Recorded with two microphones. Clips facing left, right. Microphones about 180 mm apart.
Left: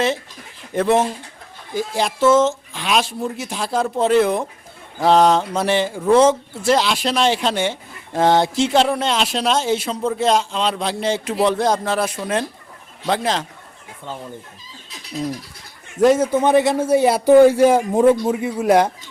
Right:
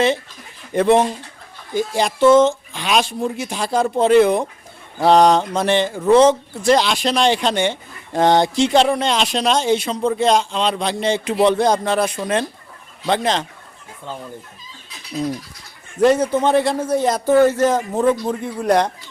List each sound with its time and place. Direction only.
0.7 s speech: centre (ahead or behind)
16.0 s a man's voice: 5° left (ahead or behind)